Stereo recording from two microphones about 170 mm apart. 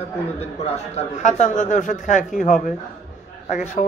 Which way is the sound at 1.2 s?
45° left (ahead or behind).